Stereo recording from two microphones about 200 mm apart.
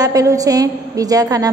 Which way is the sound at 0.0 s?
15° right (ahead or behind).